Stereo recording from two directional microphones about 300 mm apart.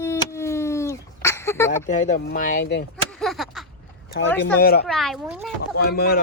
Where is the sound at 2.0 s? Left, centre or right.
Left.